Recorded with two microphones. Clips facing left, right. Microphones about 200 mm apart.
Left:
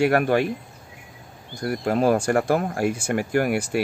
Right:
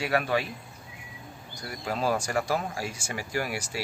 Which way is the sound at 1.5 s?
55° left (ahead or behind).